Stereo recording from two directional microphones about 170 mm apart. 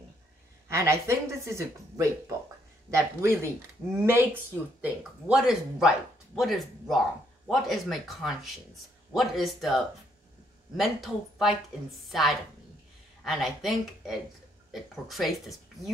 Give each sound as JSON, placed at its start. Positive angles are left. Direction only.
{"t": 0.7, "sound": "speech", "side_deg": -15}
{"t": 4.8, "sound": "speech", "side_deg": -5}
{"t": 10.8, "sound": "speech", "side_deg": 0}